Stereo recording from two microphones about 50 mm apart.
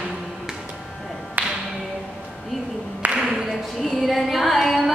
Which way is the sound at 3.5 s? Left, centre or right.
Centre.